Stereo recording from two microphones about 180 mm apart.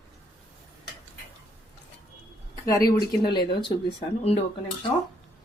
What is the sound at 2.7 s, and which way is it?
Speech, 20° left (ahead or behind).